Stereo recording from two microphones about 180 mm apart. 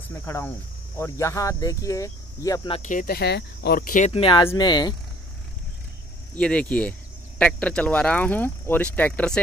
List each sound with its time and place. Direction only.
0.1 s speech: 15° left (ahead or behind)
2.7 s speech: 45° left (ahead or behind)
4.1 s speech: 30° left (ahead or behind)
6.3 s speech: 5° left (ahead or behind)